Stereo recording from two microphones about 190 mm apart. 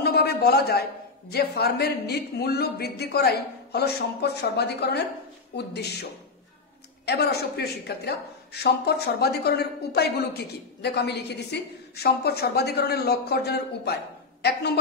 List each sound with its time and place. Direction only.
0.0 s a sound: 55° left (ahead or behind)
1.3 s a woman's voice: 55° left (ahead or behind)
7.1 s a woman's voice: 60° left (ahead or behind)